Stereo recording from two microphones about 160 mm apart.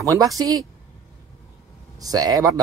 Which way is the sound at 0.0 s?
20° right (ahead or behind).